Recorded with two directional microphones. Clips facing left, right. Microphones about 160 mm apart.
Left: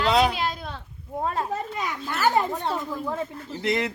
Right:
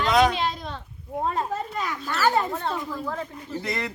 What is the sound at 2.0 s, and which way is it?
Speech, 15° left (ahead or behind).